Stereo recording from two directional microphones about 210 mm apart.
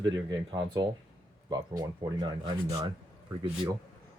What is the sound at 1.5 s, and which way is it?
Speech, 20° right (ahead or behind).